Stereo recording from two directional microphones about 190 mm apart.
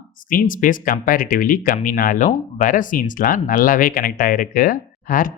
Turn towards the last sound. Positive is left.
turn(degrees=45)  # may be behind; listen again after turning